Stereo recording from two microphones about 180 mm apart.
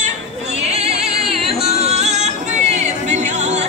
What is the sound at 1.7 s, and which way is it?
Music, 35° right (ahead or behind).